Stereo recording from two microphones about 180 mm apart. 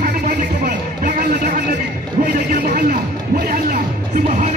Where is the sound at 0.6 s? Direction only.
55° right (ahead or behind).